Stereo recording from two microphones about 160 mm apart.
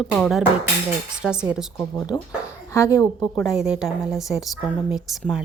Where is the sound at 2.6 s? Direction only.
20° left (ahead or behind).